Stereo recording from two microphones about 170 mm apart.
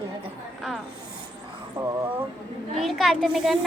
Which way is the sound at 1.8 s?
30° right (ahead or behind).